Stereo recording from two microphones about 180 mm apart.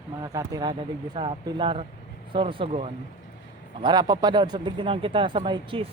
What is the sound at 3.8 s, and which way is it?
A woman's voice, 20° right (ahead or behind).